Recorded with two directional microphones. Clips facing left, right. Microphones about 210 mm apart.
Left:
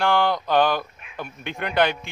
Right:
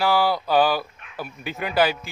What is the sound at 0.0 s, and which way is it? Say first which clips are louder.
Speech: even; 5° right (ahead or behind).